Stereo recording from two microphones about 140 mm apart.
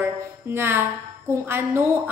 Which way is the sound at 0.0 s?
15° right (ahead or behind).